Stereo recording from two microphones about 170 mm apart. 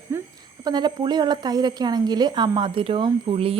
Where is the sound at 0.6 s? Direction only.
25° right (ahead or behind).